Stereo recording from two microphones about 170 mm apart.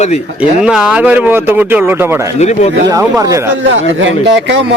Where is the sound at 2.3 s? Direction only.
40° left (ahead or behind).